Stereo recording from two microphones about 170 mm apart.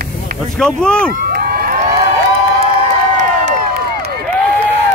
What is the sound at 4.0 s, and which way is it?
Crowd, 70° right (ahead or behind).